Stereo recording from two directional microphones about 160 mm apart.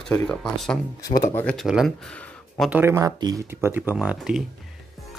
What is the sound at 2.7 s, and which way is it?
Speech, 15° right (ahead or behind).